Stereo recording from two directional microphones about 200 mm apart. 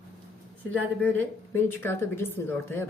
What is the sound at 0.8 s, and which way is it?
Speech, 10° left (ahead or behind).